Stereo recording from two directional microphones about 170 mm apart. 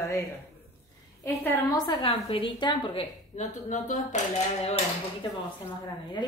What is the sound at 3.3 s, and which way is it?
Speech, 45° left (ahead or behind).